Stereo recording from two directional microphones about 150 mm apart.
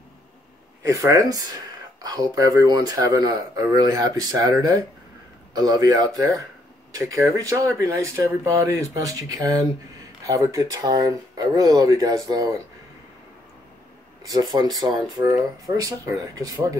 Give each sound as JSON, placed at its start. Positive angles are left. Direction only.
{"t": 0.8, "sound": "speech", "side_deg": -20}
{"t": 14.2, "sound": "speech", "side_deg": -25}